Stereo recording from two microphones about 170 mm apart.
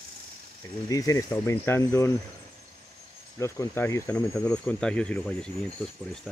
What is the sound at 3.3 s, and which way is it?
Speech, 15° left (ahead or behind).